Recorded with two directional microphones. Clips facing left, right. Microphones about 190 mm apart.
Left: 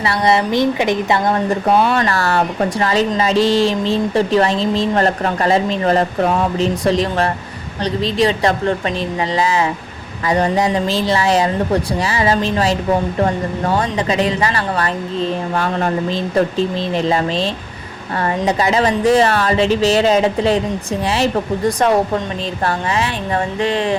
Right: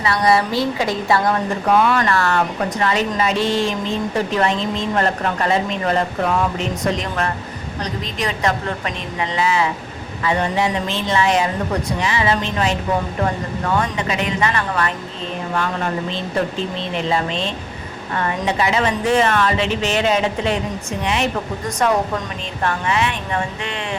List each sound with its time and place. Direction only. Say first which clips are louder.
0.0 s a woman's voice: left 1 dB; 25° left (ahead or behind)
21.8 s a woman's voice: left 1 dB; 35° left (ahead or behind)